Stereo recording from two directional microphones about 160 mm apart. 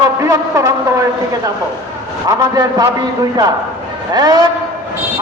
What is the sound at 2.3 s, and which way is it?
Speech, 20° right (ahead or behind).